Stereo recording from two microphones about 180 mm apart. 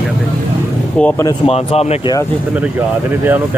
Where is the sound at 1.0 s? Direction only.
10° left (ahead or behind).